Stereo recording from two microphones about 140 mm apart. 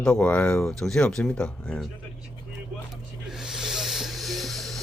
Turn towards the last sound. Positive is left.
turn(degrees=0)  # may be behind; listen again after turning